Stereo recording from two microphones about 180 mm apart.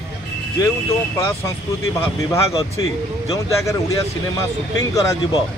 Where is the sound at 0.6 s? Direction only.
20° left (ahead or behind).